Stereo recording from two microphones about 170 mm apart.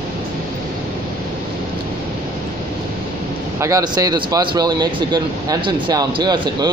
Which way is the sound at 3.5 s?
20° right (ahead or behind).